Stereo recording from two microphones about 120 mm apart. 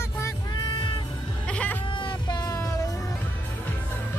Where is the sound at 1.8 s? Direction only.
40° left (ahead or behind).